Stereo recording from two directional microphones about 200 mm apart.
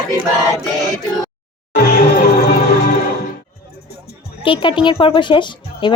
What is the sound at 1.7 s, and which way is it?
Music, 50° left (ahead or behind).